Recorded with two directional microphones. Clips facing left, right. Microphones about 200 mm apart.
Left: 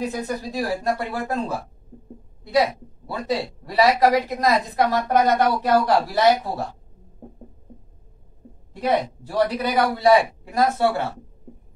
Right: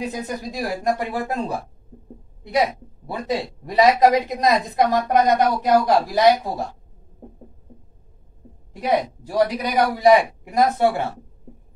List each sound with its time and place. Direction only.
0.1 s a man's voice: 15° right (ahead or behind)
8.8 s a man's voice: 15° right (ahead or behind)